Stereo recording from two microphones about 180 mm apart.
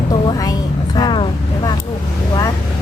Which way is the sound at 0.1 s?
20° left (ahead or behind).